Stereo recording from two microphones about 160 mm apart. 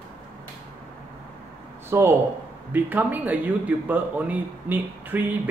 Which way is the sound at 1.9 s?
15° right (ahead or behind).